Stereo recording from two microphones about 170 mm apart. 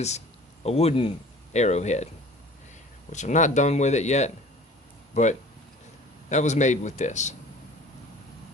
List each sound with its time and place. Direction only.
0.6 s speech: 35° left (ahead or behind)
3.1 s speech: 45° left (ahead or behind)